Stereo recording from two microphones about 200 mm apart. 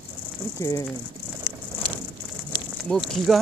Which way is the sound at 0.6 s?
15° left (ahead or behind).